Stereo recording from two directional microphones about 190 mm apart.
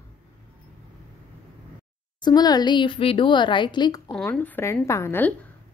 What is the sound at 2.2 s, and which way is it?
A woman's voice, 20° left (ahead or behind).